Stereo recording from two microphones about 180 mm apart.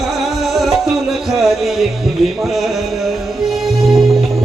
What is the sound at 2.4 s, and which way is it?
Speech, centre (ahead or behind).